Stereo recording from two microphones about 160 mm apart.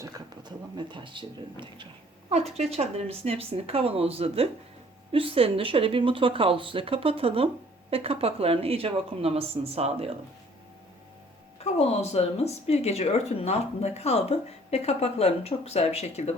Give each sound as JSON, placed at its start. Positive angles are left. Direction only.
{"t": 0.0, "sound": "speech", "side_deg": -30}
{"t": 2.3, "sound": "speech", "side_deg": -40}
{"t": 11.6, "sound": "speech", "side_deg": 40}